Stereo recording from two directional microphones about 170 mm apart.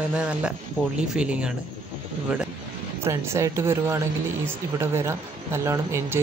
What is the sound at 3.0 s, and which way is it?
Speech, 15° right (ahead or behind).